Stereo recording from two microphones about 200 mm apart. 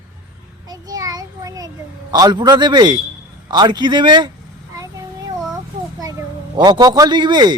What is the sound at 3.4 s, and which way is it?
Speech, 20° right (ahead or behind).